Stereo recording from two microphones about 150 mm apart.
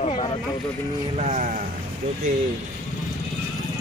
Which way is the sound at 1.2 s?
55° right (ahead or behind).